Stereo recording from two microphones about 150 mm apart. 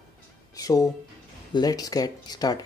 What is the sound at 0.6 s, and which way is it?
Music, 25° left (ahead or behind).